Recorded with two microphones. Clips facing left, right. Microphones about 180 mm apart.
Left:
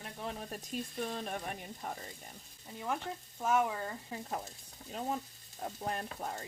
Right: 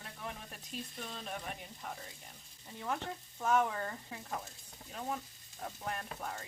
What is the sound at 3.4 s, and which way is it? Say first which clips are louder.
Frying: even; 10° left (ahead or behind).